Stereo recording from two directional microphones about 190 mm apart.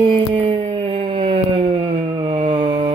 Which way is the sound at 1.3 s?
25° right (ahead or behind).